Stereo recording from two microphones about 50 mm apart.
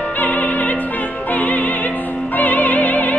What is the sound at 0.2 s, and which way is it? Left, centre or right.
Opera, left.